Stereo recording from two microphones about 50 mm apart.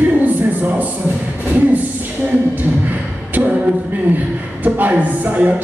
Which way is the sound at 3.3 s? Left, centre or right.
Right.